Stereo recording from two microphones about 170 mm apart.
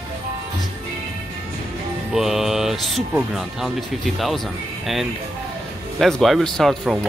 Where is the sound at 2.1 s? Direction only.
Centre (ahead or behind).